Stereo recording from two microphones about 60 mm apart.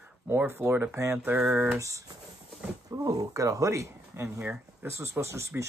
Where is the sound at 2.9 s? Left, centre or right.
Right.